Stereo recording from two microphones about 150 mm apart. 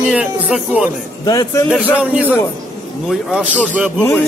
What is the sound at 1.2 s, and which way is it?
Speech, 25° left (ahead or behind).